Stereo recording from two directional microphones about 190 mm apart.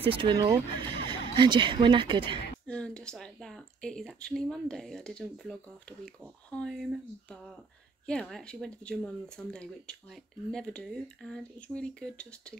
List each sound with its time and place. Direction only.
0.0 s speech: 25° right (ahead or behind)
2.6 s speech: 5° left (ahead or behind)